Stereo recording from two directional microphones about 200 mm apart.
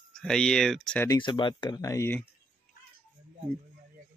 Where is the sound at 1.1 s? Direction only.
25° left (ahead or behind).